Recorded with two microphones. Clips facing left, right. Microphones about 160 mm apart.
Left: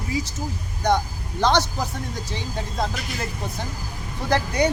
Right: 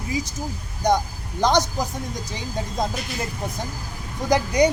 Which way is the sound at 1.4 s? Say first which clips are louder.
Right 1 dB; 15° right (ahead or behind).